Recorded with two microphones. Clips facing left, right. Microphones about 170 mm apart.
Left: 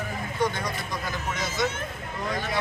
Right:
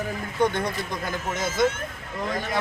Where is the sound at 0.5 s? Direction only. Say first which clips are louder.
Right 4 dB; 55° right (ahead or behind).